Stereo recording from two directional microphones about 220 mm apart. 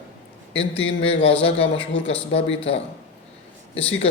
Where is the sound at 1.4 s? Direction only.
25° left (ahead or behind).